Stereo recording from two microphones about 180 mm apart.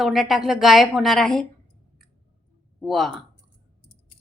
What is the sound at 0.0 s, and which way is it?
Speech, centre (ahead or behind).